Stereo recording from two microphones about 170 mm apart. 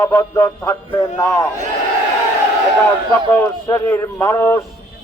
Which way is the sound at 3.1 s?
10° left (ahead or behind).